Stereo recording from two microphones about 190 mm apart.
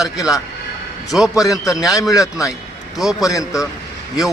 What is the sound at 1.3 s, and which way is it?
Speech, 15° left (ahead or behind).